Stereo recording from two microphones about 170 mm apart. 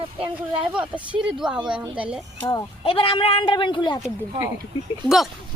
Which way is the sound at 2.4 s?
30° left (ahead or behind).